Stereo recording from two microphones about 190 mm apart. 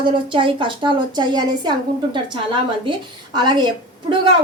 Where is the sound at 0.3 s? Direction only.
25° right (ahead or behind).